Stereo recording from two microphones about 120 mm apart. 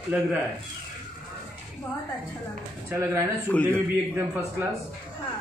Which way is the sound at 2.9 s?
25° right (ahead or behind).